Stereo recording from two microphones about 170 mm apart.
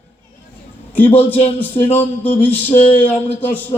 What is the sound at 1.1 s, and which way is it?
Speech, 30° left (ahead or behind).